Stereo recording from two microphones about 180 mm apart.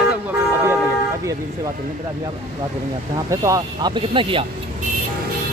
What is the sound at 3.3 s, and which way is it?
Speech, 20° right (ahead or behind).